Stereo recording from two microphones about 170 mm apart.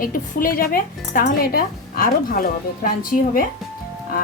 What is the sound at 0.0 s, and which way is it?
Speech, 55° left (ahead or behind).